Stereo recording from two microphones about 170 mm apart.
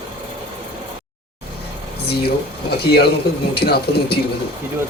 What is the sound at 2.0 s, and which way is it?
Speech, 70° left (ahead or behind).